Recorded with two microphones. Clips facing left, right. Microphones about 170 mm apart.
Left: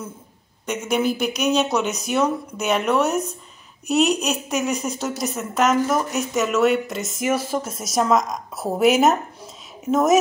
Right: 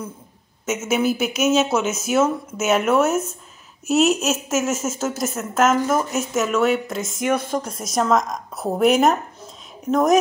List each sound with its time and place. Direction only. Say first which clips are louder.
0.7 s a woman's voice: right 1 dB; 5° right (ahead or behind)